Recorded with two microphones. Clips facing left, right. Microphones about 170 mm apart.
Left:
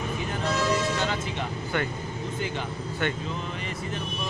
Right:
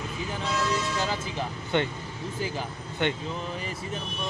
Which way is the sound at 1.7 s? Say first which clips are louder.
Right 3 dB; 20° right (ahead or behind).